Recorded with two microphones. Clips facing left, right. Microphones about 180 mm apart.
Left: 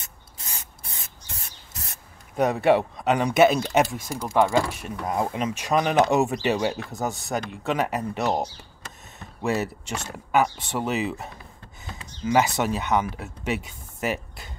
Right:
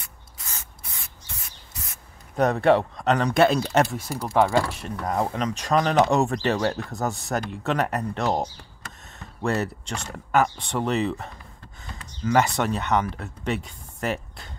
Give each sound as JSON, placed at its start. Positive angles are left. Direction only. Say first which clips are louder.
{"t": 0.0, "sound": "spray", "louder": "even", "side_deg": 20}
{"t": 2.3, "sound": "speech", "louder": "right 1 dB", "side_deg": 5}
{"t": 4.5, "sound": "speech", "louder": "even", "side_deg": 10}